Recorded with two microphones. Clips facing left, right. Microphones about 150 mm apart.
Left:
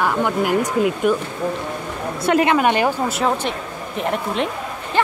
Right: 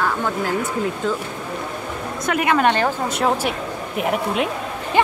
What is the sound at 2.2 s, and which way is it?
Speech, 30° left (ahead or behind).